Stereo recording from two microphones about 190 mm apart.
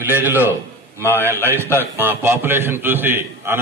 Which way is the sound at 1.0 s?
10° left (ahead or behind).